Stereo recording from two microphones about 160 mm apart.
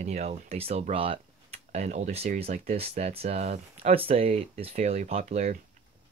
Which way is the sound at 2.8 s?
40° right (ahead or behind).